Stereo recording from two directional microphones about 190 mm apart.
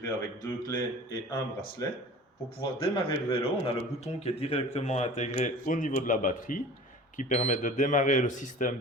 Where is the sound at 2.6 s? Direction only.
30° left (ahead or behind).